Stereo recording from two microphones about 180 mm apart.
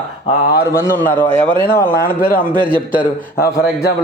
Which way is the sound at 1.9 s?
55° left (ahead or behind).